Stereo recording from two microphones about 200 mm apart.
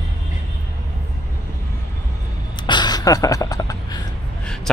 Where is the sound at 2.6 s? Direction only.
20° left (ahead or behind).